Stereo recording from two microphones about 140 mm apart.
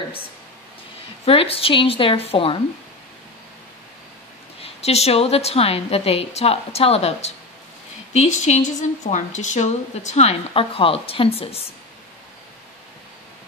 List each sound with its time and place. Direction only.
1.2 s a woman's voice: 40° left (ahead or behind)
4.6 s a woman's voice: 50° left (ahead or behind)